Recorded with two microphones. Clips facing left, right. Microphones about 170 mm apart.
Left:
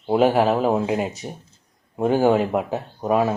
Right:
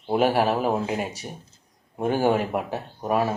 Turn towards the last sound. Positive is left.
turn(degrees=20)  # may be behind; listen again after turning